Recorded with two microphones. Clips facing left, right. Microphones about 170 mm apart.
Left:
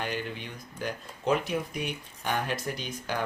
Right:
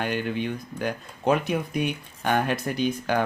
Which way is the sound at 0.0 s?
60° right (ahead or behind).